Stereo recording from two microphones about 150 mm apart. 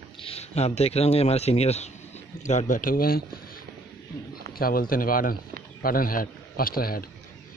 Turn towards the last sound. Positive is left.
turn(degrees=80)